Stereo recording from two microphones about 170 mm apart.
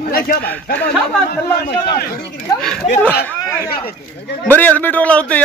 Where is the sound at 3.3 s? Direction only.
15° left (ahead or behind).